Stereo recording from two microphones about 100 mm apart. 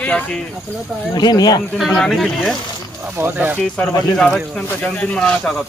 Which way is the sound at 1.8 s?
Centre (ahead or behind).